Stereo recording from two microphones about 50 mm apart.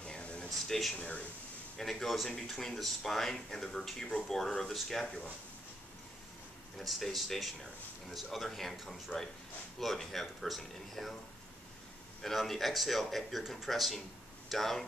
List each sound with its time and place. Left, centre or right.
0.0 s a sound: left
0.7 s speech: centre
0.9 s speech: left
1.8 s speech: centre
6.8 s speech: centre
12.2 s speech: centre